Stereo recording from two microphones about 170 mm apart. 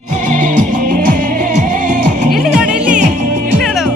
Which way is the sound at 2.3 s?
Centre (ahead or behind).